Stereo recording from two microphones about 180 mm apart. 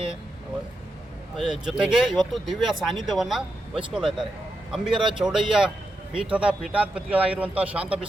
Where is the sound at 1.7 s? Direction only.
Centre (ahead or behind).